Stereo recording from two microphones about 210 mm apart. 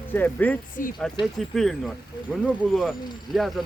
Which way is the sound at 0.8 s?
40° left (ahead or behind).